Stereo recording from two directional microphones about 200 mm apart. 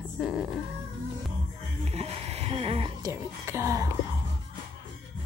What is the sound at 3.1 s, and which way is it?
Speech, 15° right (ahead or behind).